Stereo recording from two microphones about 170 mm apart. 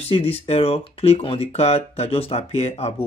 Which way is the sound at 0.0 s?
35° left (ahead or behind).